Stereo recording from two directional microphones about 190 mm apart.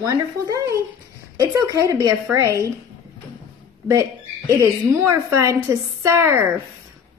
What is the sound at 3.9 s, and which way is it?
A woman's voice, 15° right (ahead or behind).